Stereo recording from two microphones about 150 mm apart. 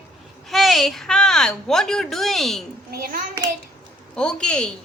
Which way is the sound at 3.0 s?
70° right (ahead or behind).